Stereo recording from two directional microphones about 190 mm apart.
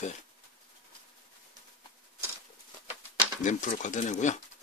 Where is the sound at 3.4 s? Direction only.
40° left (ahead or behind).